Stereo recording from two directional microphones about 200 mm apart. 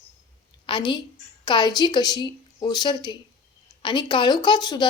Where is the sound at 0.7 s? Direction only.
20° left (ahead or behind).